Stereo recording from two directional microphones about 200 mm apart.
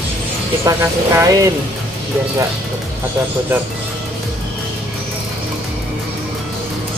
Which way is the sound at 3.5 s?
10° right (ahead or behind).